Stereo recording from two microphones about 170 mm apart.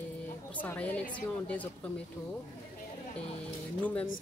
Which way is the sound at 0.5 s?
10° left (ahead or behind).